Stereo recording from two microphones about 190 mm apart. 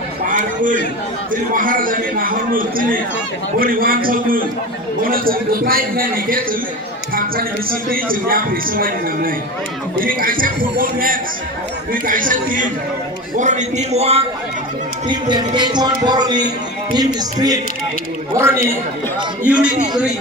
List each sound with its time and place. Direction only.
0.3 s a sound: 45° right (ahead or behind)
1.3 s a man's voice: 45° right (ahead or behind)
15.0 s a man's voice: 25° right (ahead or behind); by 19.7 s 5° right (ahead or behind)